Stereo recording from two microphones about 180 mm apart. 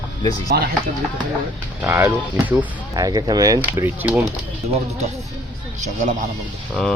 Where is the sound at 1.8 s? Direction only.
10° right (ahead or behind).